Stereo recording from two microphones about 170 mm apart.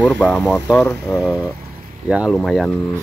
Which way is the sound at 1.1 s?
5° right (ahead or behind).